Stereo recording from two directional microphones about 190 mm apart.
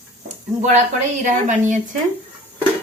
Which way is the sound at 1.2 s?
40° right (ahead or behind).